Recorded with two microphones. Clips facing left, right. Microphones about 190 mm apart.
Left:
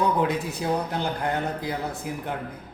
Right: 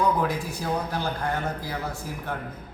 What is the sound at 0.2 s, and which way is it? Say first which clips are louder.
A man's voice: left 2 dB; 20° left (ahead or behind).